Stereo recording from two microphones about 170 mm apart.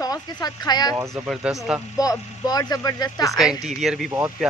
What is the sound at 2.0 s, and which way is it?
Speech, 20° left (ahead or behind).